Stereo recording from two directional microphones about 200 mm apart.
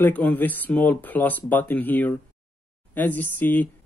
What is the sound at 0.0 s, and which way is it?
Speech, 5° left (ahead or behind).